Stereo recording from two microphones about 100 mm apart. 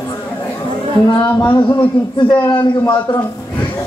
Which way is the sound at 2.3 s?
50° left (ahead or behind).